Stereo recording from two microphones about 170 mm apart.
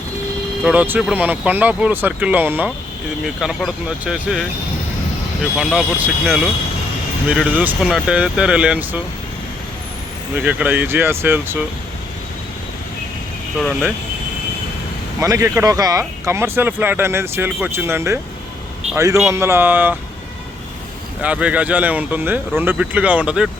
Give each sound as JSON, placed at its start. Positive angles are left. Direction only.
{"t": 0.6, "sound": "speech", "side_deg": -10}
{"t": 3.4, "sound": "speech", "side_deg": 0}
{"t": 5.5, "sound": "speech", "side_deg": -5}
{"t": 10.3, "sound": "speech", "side_deg": -10}
{"t": 13.6, "sound": "speech", "side_deg": 0}
{"t": 15.2, "sound": "speech", "side_deg": -20}
{"t": 19.2, "sound": "speech", "side_deg": -15}
{"t": 21.2, "sound": "speech", "side_deg": -5}